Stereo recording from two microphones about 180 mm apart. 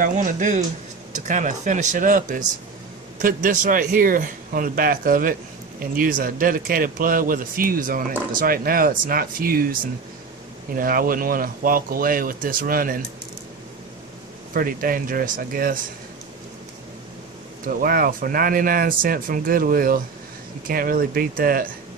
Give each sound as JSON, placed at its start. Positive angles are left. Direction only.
{"t": 0.0, "sound": "speech", "side_deg": -45}
{"t": 14.5, "sound": "speech", "side_deg": -50}
{"t": 17.6, "sound": "speech", "side_deg": -55}